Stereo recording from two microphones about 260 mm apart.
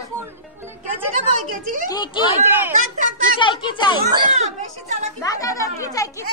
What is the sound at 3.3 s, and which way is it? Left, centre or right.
Speech, centre.